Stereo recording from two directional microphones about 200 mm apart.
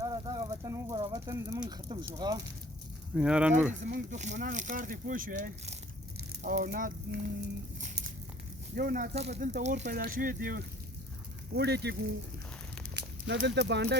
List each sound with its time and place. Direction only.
0.0 s speech: 15° right (ahead or behind)
3.2 s speech: 5° right (ahead or behind)
3.8 s speech: 40° right (ahead or behind)
8.7 s speech: 45° right (ahead or behind)
9.1 s speech: 35° right (ahead or behind)
9.9 s speech: 45° right (ahead or behind)